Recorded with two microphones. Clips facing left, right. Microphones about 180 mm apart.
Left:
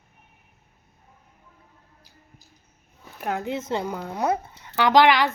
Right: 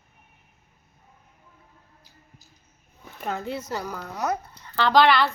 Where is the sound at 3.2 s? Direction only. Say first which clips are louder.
Left 2 dB; 15° left (ahead or behind).